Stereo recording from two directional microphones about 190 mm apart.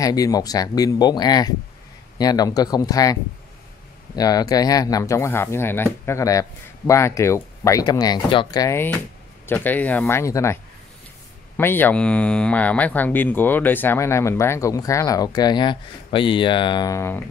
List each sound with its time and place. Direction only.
0.0 s speech: 20° left (ahead or behind)